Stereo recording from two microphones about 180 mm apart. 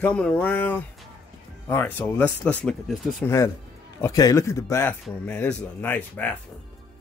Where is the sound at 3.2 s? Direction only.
15° left (ahead or behind).